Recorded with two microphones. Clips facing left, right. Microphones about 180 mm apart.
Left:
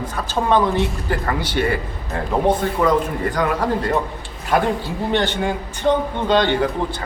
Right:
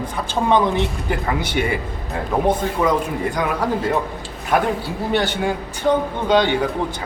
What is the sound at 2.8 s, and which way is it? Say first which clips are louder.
A man's voice: left 1 dB; 10° right (ahead or behind).